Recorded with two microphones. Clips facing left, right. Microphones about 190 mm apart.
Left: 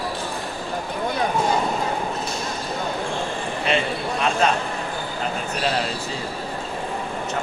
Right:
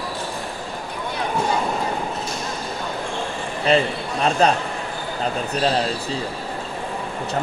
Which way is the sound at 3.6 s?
35° right (ahead or behind).